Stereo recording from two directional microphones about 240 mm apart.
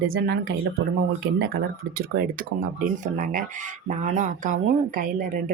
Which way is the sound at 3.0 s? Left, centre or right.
Right.